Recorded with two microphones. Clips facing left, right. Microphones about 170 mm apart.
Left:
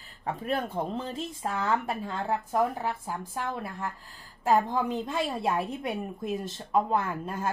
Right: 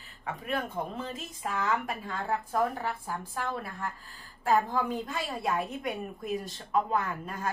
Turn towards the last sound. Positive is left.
turn(degrees=25)  # may be behind; listen again after turning